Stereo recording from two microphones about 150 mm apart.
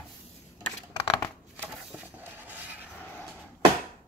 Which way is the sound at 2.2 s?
10° right (ahead or behind).